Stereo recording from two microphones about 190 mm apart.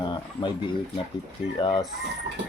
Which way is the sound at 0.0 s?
25° left (ahead or behind).